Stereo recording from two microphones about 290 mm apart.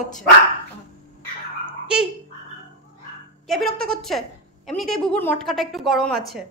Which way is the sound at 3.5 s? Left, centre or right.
Centre.